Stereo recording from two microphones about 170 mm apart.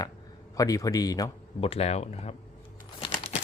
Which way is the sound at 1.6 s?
35° left (ahead or behind).